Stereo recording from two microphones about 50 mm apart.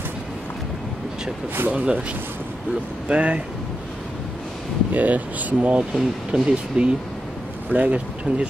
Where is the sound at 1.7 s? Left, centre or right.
Right.